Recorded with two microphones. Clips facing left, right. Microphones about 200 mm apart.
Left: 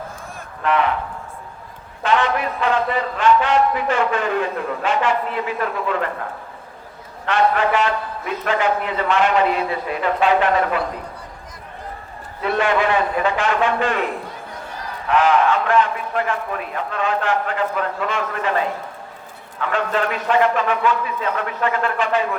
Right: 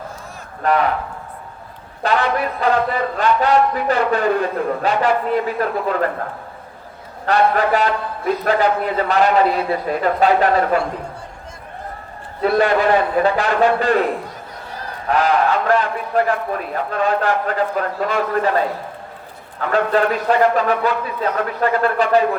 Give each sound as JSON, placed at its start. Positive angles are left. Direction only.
{"t": 0.6, "sound": "a man's voice", "side_deg": -40}
{"t": 2.0, "sound": "a sound", "side_deg": -35}
{"t": 3.2, "sound": "a man's voice", "side_deg": -35}
{"t": 7.3, "sound": "a man's voice", "side_deg": -40}
{"t": 12.4, "sound": "a man's voice", "side_deg": -40}
{"t": 15.0, "sound": "a man's voice", "side_deg": -35}